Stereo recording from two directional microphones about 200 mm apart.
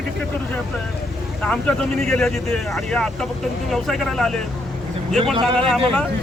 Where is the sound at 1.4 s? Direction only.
5° left (ahead or behind).